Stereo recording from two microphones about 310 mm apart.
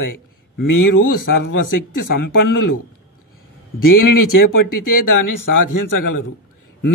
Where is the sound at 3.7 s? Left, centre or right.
Left.